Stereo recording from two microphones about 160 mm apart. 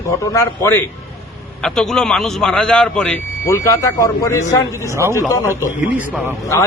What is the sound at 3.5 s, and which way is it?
A man's voice, 20° left (ahead or behind).